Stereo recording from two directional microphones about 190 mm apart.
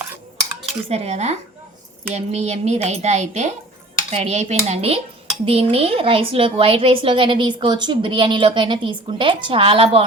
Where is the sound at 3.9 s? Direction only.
35° right (ahead or behind).